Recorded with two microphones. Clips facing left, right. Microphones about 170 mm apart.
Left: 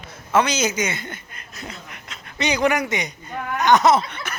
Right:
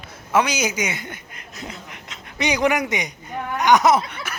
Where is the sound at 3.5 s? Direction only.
15° right (ahead or behind).